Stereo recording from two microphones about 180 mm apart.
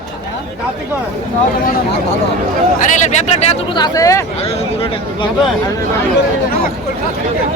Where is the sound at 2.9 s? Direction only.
40° left (ahead or behind).